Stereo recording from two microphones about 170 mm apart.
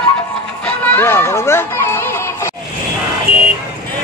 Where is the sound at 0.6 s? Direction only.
10° left (ahead or behind).